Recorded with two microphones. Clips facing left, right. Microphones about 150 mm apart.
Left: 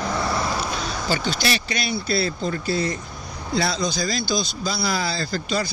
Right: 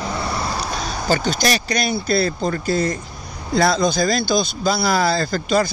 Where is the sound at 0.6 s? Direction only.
40° right (ahead or behind).